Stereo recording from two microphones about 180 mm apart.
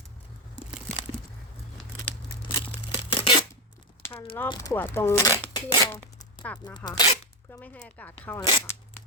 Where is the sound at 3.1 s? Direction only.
25° left (ahead or behind).